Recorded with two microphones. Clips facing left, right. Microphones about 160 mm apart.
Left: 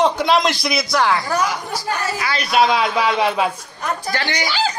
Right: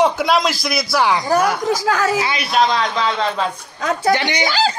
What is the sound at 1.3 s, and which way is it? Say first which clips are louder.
Speech: right 5 dB; 60° right (ahead or behind).